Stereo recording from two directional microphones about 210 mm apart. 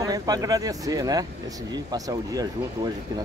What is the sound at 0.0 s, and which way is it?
Speech, 15° right (ahead or behind).